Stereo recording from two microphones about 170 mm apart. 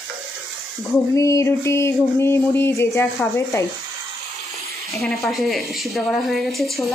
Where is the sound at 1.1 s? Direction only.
20° left (ahead or behind).